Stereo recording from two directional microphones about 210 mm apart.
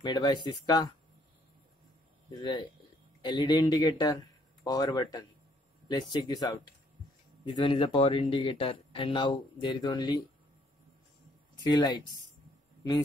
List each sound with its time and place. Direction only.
0.0 s speech: 20° left (ahead or behind)
2.4 s speech: 20° left (ahead or behind)
11.6 s speech: 20° left (ahead or behind)